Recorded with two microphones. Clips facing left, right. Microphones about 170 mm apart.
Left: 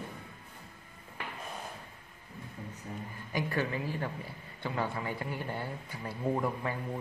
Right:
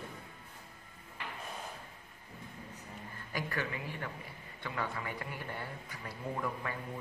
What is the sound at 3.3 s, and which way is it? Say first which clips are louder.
A man's voice: left 5 dB; 25° left (ahead or behind).